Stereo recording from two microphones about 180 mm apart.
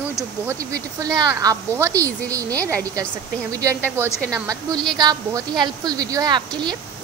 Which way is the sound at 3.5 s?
20° right (ahead or behind).